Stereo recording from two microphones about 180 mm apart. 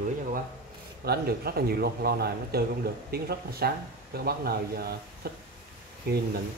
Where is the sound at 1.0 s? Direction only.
60° right (ahead or behind).